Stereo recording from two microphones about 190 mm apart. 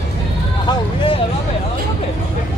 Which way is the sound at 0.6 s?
25° left (ahead or behind).